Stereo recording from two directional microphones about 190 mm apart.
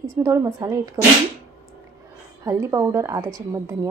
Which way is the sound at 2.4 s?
15° right (ahead or behind).